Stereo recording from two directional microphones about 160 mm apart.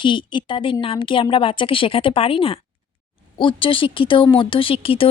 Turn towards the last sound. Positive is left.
turn(degrees=35)  # may be behind; listen again after turning